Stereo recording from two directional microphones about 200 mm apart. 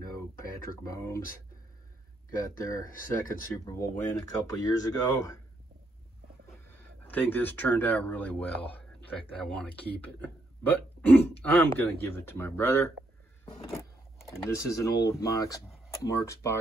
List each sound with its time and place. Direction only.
0.7 s speech: 15° left (ahead or behind)
2.3 s speech: 20° left (ahead or behind)
7.0 s speech: 10° left (ahead or behind)
14.4 s speech: 15° left (ahead or behind)